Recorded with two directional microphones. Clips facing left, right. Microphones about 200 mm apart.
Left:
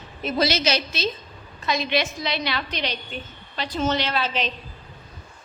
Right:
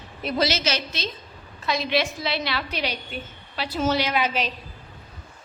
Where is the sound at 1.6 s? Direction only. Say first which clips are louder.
Even; centre (ahead or behind).